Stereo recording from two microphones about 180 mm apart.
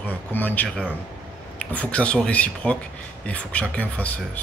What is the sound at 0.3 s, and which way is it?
Speech, 10° left (ahead or behind).